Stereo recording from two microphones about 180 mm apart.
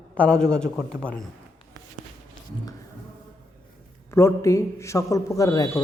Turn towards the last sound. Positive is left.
turn(degrees=15)  # may be behind; listen again after turning